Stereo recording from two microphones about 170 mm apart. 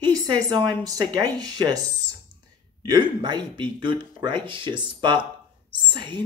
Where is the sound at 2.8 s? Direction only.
25° right (ahead or behind).